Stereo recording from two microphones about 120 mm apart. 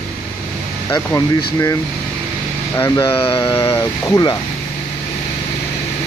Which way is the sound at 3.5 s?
25° left (ahead or behind).